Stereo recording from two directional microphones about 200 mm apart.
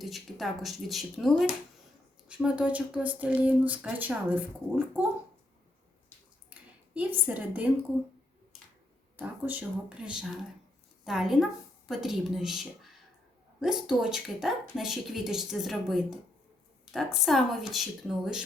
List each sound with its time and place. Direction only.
0.0 s speech: centre (ahead or behind)
6.5 s a sound: 10° right (ahead or behind)
9.1 s a woman's voice: 10° right (ahead or behind)